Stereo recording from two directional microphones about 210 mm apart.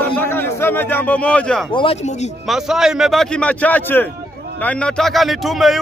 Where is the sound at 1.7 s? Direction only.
25° left (ahead or behind).